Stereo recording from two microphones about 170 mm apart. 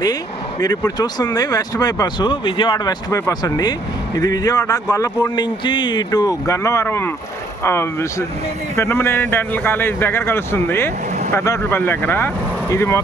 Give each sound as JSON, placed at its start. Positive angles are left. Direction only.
{"t": 0.6, "sound": "speech", "side_deg": 20}